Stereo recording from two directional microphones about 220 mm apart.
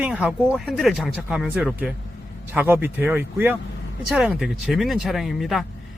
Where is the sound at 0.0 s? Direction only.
5° right (ahead or behind).